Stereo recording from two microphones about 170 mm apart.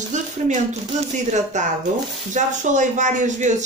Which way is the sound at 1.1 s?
45° right (ahead or behind).